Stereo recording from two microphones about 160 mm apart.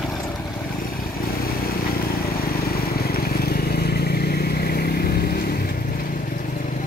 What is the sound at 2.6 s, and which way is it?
Vehicle, 70° left (ahead or behind).